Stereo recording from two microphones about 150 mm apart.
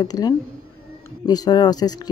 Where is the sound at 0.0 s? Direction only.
25° left (ahead or behind).